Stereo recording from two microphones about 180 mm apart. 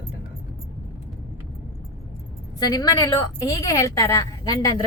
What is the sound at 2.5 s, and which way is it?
A woman's voice, 20° left (ahead or behind).